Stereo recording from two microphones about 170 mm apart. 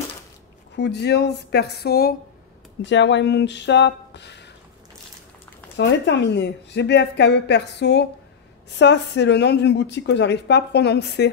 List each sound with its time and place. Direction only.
0.7 s speech: 80° left
2.8 s a woman's voice: 90° left
5.8 s a woman's voice: 90° left